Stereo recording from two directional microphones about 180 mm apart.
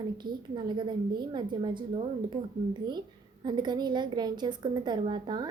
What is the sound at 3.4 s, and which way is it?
A woman's voice, 25° right (ahead or behind).